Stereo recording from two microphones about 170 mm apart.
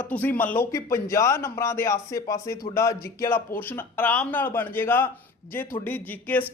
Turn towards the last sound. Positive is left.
turn(degrees=10)  # may be behind; listen again after turning